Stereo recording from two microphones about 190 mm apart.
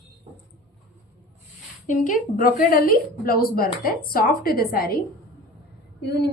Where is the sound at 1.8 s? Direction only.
45° left (ahead or behind).